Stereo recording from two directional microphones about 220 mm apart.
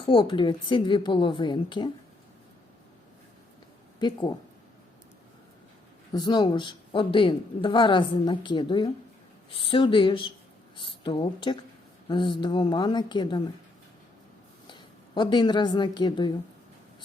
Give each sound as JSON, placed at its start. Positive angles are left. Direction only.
{"t": 0.0, "sound": "speech", "side_deg": 25}
{"t": 4.0, "sound": "speech", "side_deg": 20}
{"t": 6.1, "sound": "speech", "side_deg": 20}
{"t": 14.7, "sound": "a woman's voice", "side_deg": 20}